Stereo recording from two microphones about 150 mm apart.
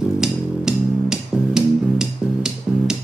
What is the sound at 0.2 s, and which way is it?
Music, 5° right (ahead or behind).